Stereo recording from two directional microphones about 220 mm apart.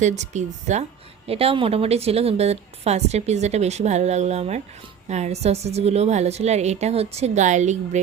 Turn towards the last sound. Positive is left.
turn(degrees=-35)  # may be behind; listen again after turning